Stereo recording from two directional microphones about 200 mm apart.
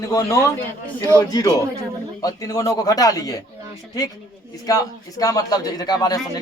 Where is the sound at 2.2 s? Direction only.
15° left (ahead or behind).